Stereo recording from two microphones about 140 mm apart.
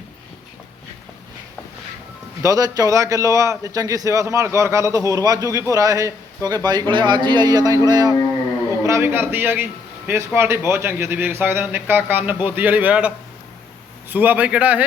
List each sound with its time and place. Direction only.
2.4 s a man's voice: 25° right (ahead or behind); by 14.8 s 10° right (ahead or behind)